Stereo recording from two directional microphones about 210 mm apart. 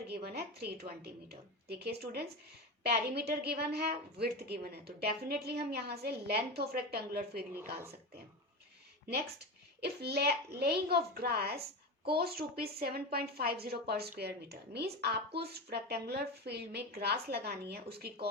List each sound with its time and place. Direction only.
0.1 s a woman's voice: 50° right (ahead or behind)
9.8 s a woman's voice: 50° right (ahead or behind)